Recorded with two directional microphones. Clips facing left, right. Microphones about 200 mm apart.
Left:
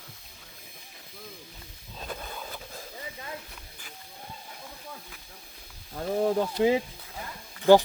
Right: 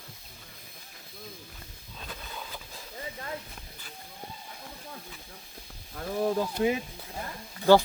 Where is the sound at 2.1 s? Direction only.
45° left (ahead or behind).